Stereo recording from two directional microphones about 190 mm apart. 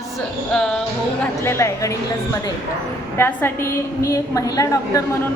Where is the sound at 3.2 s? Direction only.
10° left (ahead or behind).